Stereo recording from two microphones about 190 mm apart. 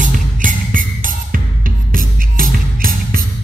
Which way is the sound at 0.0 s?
45° right (ahead or behind).